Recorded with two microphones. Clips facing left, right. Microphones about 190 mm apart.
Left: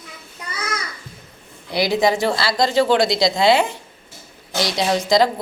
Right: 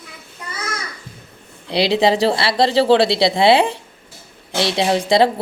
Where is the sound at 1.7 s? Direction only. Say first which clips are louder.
Right 2 dB; 30° right (ahead or behind).